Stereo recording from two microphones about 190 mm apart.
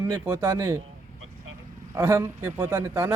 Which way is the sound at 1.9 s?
15° right (ahead or behind).